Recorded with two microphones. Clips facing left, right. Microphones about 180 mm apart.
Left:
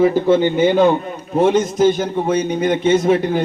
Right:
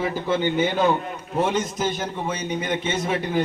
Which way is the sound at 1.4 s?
50° left (ahead or behind).